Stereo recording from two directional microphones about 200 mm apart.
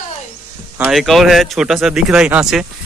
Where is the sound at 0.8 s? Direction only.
Centre (ahead or behind).